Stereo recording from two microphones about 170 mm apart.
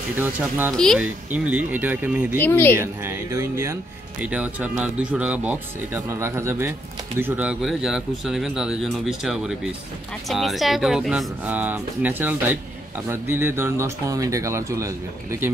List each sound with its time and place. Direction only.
0.7 s speech: 5° left (ahead or behind)
0.9 s speech: 5° right (ahead or behind)
2.3 s speech: 10° left (ahead or behind)
2.8 s speech: 15° right (ahead or behind)